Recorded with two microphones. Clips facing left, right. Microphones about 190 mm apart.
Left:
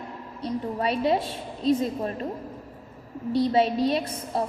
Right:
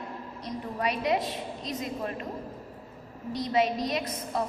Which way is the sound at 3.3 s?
30° left (ahead or behind).